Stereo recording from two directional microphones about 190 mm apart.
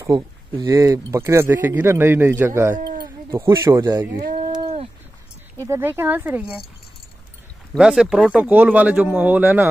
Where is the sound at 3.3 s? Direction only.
15° right (ahead or behind).